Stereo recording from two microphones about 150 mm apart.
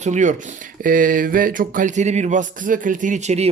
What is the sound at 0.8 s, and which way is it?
Speech, 65° right (ahead or behind).